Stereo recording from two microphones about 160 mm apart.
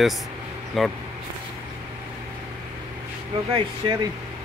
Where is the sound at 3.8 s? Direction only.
30° right (ahead or behind).